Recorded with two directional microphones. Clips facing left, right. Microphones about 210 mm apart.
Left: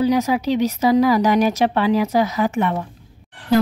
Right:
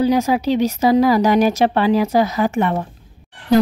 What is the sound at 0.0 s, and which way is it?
A woman's voice, 30° right (ahead or behind).